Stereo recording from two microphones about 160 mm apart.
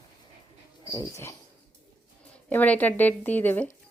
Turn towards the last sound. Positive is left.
turn(degrees=10)  # may be behind; listen again after turning